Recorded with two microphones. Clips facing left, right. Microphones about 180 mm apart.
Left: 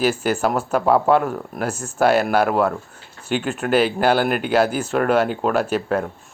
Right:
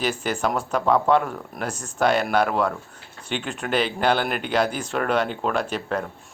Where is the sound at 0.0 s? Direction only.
5° left (ahead or behind).